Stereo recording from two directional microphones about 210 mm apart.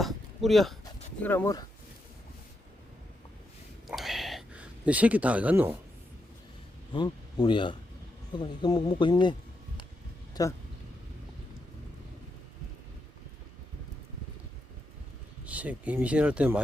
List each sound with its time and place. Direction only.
0.0 s a sound: centre (ahead or behind)
1.2 s speech: 10° left (ahead or behind)
3.8 s a sound: centre (ahead or behind)
6.9 s speech: 20° left (ahead or behind)
10.4 s speech: 20° left (ahead or behind)
15.4 s speech: 5° right (ahead or behind)